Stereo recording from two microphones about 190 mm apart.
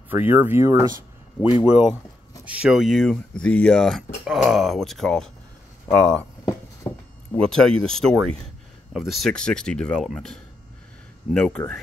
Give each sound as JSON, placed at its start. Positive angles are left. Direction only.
{"t": 0.1, "sound": "speech", "side_deg": -10}
{"t": 6.8, "sound": "a sound", "side_deg": 25}
{"t": 7.3, "sound": "speech", "side_deg": 5}